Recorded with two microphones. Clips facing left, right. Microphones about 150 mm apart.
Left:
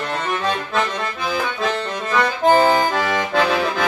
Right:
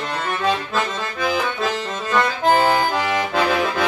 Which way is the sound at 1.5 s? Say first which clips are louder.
Left 1 dB; centre (ahead or behind).